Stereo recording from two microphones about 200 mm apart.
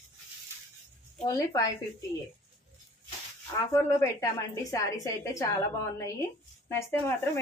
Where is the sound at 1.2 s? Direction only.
15° left (ahead or behind).